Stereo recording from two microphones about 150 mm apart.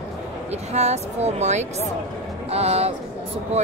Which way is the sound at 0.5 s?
45° right (ahead or behind).